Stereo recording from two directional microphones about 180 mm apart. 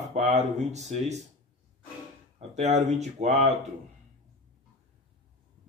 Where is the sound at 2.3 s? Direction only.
40° right (ahead or behind).